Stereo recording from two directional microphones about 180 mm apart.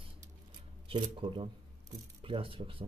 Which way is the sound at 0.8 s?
30° right (ahead or behind).